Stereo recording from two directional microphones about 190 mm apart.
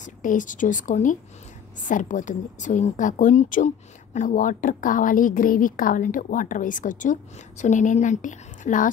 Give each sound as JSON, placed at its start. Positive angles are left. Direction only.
{"t": 0.0, "sound": "a woman's voice", "side_deg": 45}